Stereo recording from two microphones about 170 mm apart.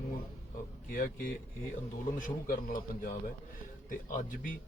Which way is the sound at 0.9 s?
50° left (ahead or behind).